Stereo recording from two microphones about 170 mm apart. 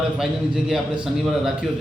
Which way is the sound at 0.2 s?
5° right (ahead or behind).